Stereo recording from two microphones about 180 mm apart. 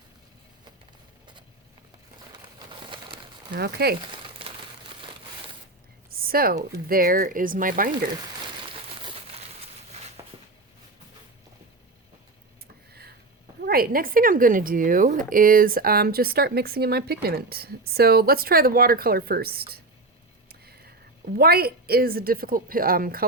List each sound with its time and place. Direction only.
2.3 s bird: 25° right (ahead or behind)
3.5 s a woman's voice: 65° right (ahead or behind)
4.1 s crumpling: 30° right (ahead or behind)
6.1 s a sound: 55° right (ahead or behind)
6.7 s speech: 55° right (ahead or behind)
12.9 s a sound: 60° right (ahead or behind)
13.7 s a woman's voice: 55° right (ahead or behind)
21.3 s a woman's voice: 60° right (ahead or behind)